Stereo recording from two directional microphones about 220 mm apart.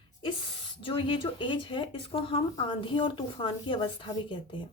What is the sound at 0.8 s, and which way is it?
Speech, 25° left (ahead or behind).